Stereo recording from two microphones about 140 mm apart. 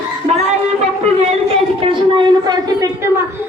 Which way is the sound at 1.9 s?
35° right (ahead or behind).